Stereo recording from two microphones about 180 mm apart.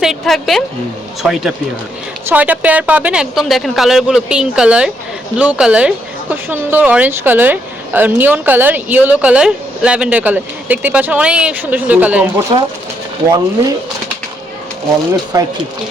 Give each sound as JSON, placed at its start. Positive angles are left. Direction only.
{"t": 0.0, "sound": "a woman's voice", "side_deg": 0}
{"t": 15.1, "sound": "speech", "side_deg": -20}